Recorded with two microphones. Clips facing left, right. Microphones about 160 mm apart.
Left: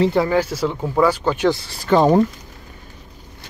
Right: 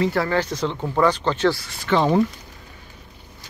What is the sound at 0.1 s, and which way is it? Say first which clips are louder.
Speech: left 4 dB; 15° left (ahead or behind).